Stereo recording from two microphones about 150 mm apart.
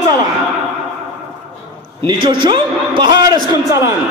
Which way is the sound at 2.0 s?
30° right (ahead or behind).